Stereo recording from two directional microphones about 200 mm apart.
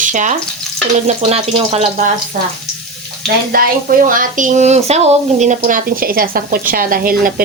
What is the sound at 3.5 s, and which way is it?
Speech, 45° right (ahead or behind).